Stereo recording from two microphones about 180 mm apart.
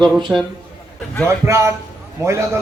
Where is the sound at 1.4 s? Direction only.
15° right (ahead or behind).